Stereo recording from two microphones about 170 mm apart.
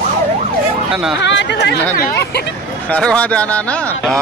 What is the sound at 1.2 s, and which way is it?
Speech, 90° left.